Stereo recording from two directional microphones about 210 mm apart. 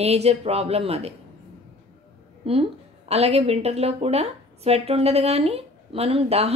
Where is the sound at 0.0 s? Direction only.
30° right (ahead or behind).